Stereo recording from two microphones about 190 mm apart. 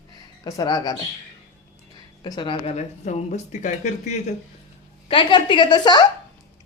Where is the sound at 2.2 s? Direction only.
25° left (ahead or behind).